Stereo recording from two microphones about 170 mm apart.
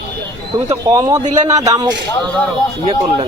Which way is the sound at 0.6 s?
20° right (ahead or behind).